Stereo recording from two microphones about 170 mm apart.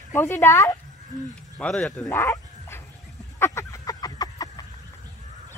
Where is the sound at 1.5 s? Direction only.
5° left (ahead or behind).